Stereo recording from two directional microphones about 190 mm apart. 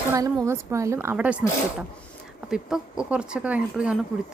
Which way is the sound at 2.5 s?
5° right (ahead or behind).